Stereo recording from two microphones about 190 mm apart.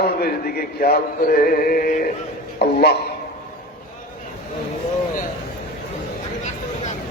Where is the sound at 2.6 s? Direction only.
60° left (ahead or behind).